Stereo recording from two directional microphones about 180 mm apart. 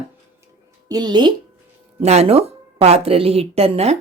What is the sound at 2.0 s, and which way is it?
A woman's voice, 35° right (ahead or behind).